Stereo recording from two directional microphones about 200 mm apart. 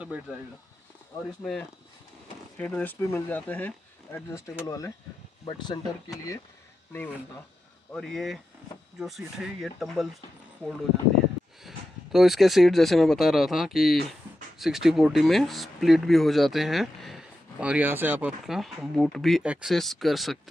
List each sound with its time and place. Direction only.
1.4 s speech: centre (ahead or behind)
7.9 s speech: centre (ahead or behind)
11.6 s speech: centre (ahead or behind)